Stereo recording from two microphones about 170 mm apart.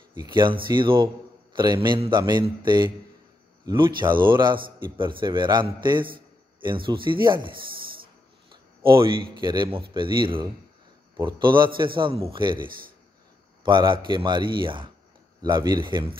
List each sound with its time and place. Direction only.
0.1 s a man's voice: 25° right (ahead or behind)
8.5 s a man's voice: 30° right (ahead or behind)
13.7 s a man's voice: 25° right (ahead or behind)